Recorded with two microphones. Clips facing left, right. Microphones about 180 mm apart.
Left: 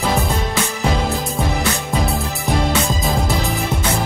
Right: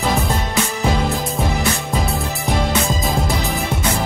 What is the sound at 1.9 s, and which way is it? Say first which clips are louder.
Music: left 1 dB; centre (ahead or behind).